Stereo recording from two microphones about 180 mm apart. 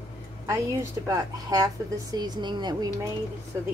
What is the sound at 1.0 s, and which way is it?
A woman's voice, 20° right (ahead or behind).